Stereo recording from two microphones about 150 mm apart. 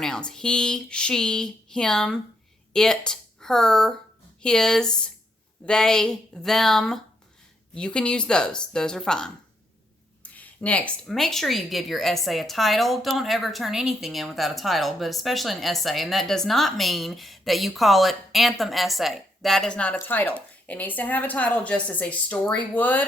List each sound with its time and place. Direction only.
0.0 s speech: 5° left (ahead or behind)